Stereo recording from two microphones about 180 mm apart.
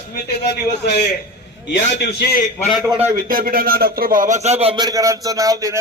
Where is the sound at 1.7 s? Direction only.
70° left (ahead or behind).